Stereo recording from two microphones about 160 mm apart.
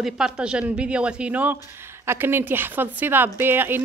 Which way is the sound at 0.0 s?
5° right (ahead or behind).